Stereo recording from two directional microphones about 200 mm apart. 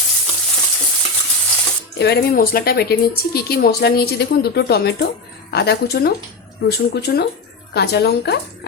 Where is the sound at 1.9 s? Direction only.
55° left (ahead or behind).